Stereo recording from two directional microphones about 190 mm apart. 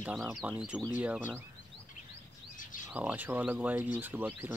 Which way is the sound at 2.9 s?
10° right (ahead or behind).